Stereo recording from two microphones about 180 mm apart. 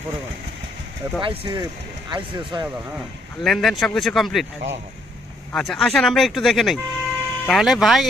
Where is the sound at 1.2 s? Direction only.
25° right (ahead or behind).